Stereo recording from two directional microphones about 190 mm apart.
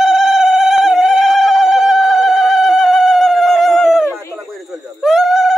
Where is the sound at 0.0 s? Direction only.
Centre (ahead or behind).